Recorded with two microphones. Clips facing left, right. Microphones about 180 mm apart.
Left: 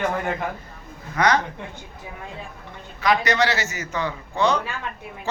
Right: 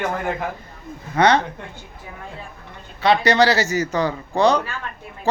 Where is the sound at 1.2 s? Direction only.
30° right (ahead or behind).